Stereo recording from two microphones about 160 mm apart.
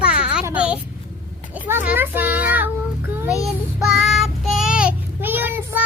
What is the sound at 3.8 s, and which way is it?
Child singing, centre (ahead or behind).